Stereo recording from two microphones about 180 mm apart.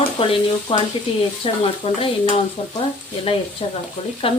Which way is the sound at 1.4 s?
30° left (ahead or behind).